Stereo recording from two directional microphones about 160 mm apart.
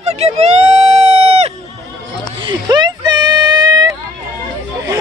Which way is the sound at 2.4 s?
25° right (ahead or behind).